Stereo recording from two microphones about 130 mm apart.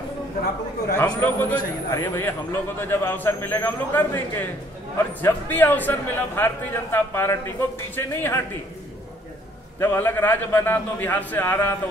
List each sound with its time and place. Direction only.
0.9 s a man's voice: 15° left (ahead or behind)
9.8 s a man's voice: 15° left (ahead or behind)